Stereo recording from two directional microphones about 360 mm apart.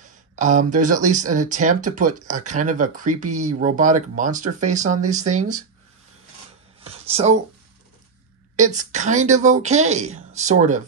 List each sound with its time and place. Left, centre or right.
0.0 s speech: right
6.8 s a sound: centre
8.5 s speech: centre